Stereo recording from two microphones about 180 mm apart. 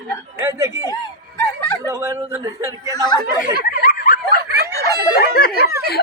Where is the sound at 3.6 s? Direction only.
50° left (ahead or behind).